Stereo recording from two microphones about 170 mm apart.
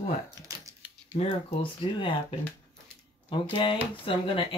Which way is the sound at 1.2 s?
35° left (ahead or behind).